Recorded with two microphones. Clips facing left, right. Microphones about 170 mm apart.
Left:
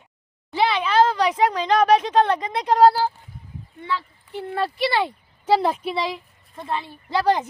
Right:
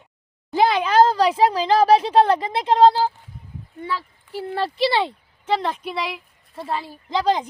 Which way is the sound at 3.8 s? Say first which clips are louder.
Even; 40° right (ahead or behind).